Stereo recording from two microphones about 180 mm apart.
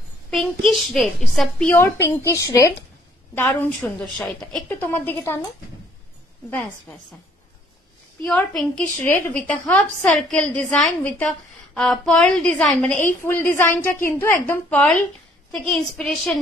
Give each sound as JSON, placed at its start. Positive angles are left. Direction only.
{"t": 0.3, "sound": "a woman's voice", "side_deg": 0}
{"t": 6.5, "sound": "a woman's voice", "side_deg": 15}
{"t": 8.2, "sound": "a woman's voice", "side_deg": 5}